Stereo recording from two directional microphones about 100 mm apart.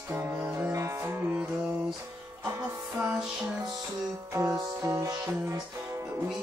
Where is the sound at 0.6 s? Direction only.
30° right (ahead or behind).